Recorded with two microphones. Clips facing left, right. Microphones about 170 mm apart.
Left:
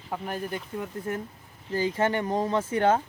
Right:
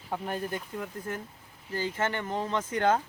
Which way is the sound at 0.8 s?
25° left (ahead or behind).